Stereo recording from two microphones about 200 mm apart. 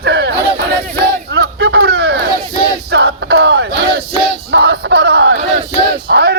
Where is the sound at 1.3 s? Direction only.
60° right (ahead or behind).